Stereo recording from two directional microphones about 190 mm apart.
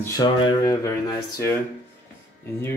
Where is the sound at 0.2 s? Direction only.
20° left (ahead or behind).